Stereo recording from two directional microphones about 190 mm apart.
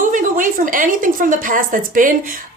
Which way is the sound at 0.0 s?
45° right (ahead or behind).